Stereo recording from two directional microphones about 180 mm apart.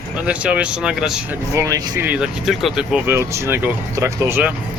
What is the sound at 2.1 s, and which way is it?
Speech, 5° right (ahead or behind).